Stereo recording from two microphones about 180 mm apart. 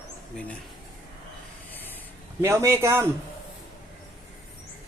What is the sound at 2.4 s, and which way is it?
Speech, 15° right (ahead or behind).